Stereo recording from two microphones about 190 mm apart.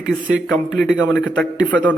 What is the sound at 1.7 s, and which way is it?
Speech, 10° left (ahead or behind).